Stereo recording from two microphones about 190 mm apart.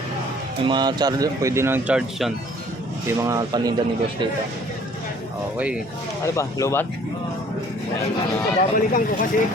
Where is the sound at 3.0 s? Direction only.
15° right (ahead or behind).